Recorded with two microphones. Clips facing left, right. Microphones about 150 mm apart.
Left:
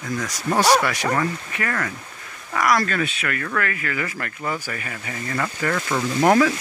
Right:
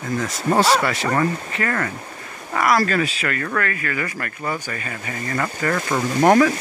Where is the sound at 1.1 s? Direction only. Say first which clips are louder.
Right 2 dB; centre (ahead or behind).